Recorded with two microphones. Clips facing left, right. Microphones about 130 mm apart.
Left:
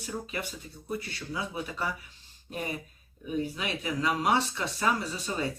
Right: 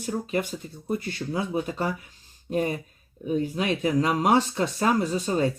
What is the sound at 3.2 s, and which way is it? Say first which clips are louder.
Speech: right 7 dB; 40° right (ahead or behind).